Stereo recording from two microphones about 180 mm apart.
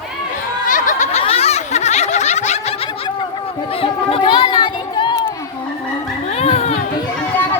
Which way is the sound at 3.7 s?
30° left (ahead or behind).